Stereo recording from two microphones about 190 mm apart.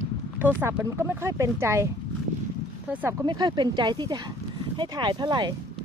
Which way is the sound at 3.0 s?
20° right (ahead or behind).